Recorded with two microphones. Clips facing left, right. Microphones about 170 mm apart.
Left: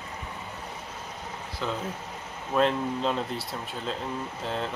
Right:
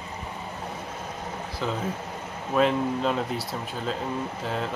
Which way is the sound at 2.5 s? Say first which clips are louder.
Right 2 dB; 5° right (ahead or behind).